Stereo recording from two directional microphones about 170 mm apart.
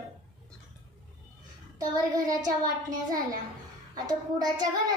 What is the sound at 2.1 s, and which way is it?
A child's voice, 20° right (ahead or behind).